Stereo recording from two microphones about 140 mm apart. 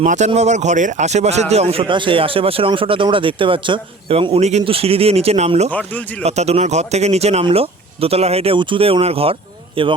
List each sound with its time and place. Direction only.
0.0 s a man's voice: 65° right (ahead or behind)
1.8 s a man's voice: 35° right (ahead or behind)